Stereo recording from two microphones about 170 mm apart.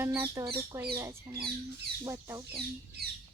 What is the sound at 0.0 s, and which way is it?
Speech, 15° right (ahead or behind).